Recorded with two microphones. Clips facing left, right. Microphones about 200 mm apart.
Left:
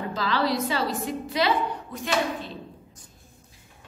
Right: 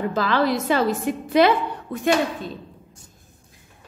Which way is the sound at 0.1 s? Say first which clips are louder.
Right 2 dB; 50° right (ahead or behind).